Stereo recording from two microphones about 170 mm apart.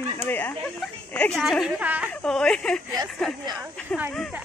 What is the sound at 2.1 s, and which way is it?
Speech, 5° left (ahead or behind).